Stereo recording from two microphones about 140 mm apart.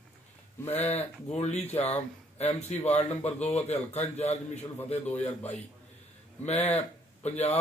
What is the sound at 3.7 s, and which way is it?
Speech, 50° left (ahead or behind).